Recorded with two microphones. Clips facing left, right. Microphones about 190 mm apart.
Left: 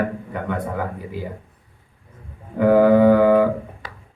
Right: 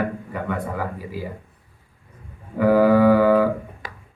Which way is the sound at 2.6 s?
20° left (ahead or behind).